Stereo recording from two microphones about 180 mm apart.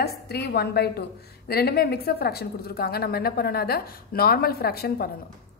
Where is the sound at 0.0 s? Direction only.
65° left (ahead or behind).